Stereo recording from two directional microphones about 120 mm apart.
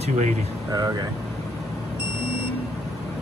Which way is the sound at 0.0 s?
80° right.